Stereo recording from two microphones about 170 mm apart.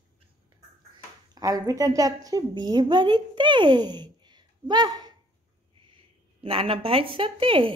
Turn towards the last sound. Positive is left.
turn(degrees=-30)  # may be behind; listen again after turning